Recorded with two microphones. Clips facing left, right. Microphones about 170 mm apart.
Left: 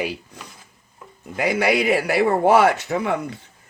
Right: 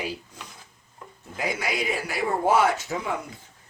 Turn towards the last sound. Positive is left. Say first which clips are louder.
# left 7 dB
turn(degrees=70)  # may be behind; listen again after turning